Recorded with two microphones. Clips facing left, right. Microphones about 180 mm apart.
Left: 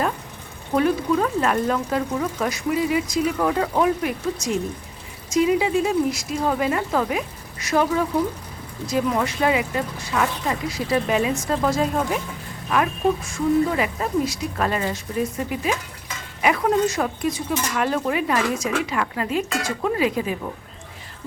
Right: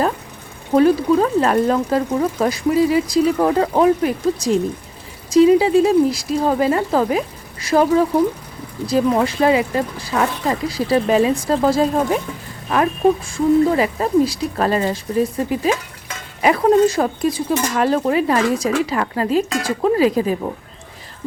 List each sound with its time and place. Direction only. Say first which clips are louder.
0.7 s speech: right 6 dB; 35° right (ahead or behind)